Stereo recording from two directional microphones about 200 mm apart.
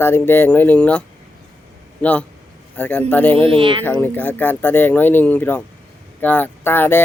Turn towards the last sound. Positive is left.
turn(degrees=10)  # may be behind; listen again after turning